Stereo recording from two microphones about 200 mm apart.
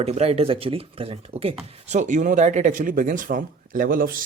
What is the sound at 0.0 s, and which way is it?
Speech, 30° right (ahead or behind).